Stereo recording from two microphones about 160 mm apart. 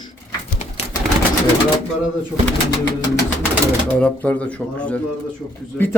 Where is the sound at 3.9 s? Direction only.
10° left (ahead or behind).